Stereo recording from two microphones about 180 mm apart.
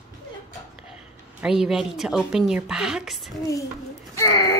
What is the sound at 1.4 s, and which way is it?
A woman's voice, 5° right (ahead or behind).